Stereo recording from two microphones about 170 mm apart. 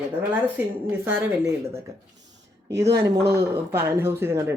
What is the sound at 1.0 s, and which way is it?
Speech, 15° right (ahead or behind).